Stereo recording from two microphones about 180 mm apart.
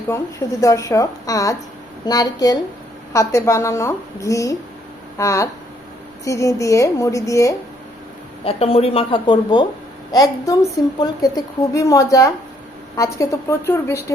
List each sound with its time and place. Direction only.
0.6 s a woman's voice: 15° left (ahead or behind)
8.4 s a woman's voice: 35° left (ahead or behind); by 14.0 s 15° left (ahead or behind)